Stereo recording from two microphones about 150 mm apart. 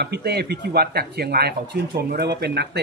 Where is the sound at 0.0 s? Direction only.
90° right.